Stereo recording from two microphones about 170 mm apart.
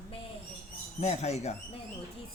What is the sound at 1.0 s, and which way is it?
Speech, 40° left (ahead or behind).